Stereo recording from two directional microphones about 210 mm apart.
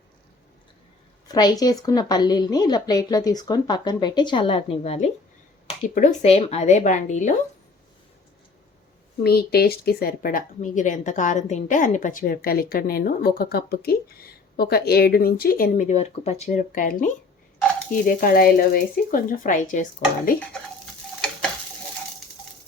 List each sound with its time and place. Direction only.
1.3 s a woman's voice: 20° left (ahead or behind); by 7.3 s 35° left (ahead or behind)
9.2 s speech: 50° left (ahead or behind)